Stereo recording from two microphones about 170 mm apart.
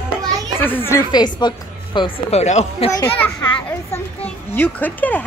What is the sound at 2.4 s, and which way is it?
Speech, 40° left (ahead or behind).